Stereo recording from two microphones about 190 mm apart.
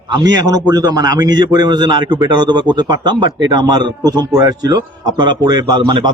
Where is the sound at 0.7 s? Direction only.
20° right (ahead or behind).